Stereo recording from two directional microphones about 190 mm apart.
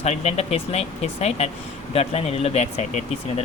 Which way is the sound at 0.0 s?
35° left (ahead or behind).